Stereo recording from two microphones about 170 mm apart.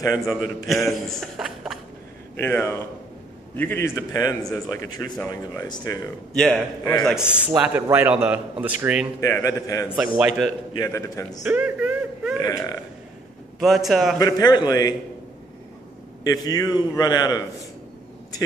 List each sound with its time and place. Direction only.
0.7 s a man's voice: centre (ahead or behind)
2.3 s a man's voice: 15° left (ahead or behind)
6.3 s a man's voice: centre (ahead or behind)
6.8 s speech: 20° left (ahead or behind)
7.1 s a man's voice: 5° right (ahead or behind)
9.2 s speech: 20° left (ahead or behind)
9.9 s a man's voice: 5° right (ahead or behind)
10.7 s a man's voice: 20° left (ahead or behind)
11.4 s a sound: 10° right (ahead or behind)
12.4 s speech: 20° left (ahead or behind)
13.6 s a man's voice: centre (ahead or behind)
14.1 s speech: 20° left (ahead or behind)
16.3 s speech: 20° left (ahead or behind)